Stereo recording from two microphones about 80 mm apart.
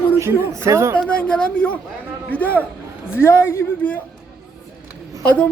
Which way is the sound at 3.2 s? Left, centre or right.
Left.